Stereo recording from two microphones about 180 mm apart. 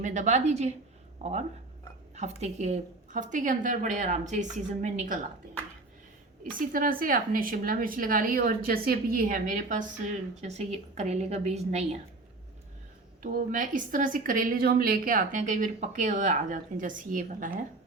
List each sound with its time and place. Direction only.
0.0 s a woman's voice: 45° right (ahead or behind)
6.6 s a woman's voice: 50° right (ahead or behind)
10.4 s a woman's voice: 35° right (ahead or behind)
13.2 s a woman's voice: 50° right (ahead or behind)